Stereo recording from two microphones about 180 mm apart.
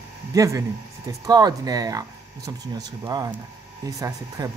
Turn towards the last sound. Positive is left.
turn(degrees=-20)  # may be behind; listen again after turning